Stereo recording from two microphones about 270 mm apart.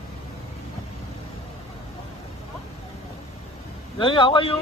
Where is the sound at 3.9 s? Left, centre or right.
Centre.